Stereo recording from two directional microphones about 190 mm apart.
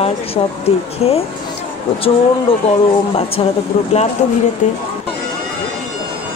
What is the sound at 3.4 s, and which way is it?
Speech, 30° left (ahead or behind).